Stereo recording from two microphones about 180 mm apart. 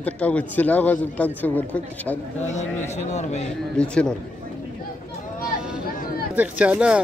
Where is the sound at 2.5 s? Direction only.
40° left (ahead or behind).